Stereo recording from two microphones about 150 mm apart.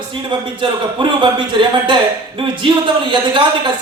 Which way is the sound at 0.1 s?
30° right (ahead or behind).